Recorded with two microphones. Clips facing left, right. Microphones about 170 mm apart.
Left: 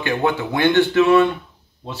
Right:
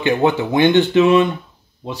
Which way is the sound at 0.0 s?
20° right (ahead or behind).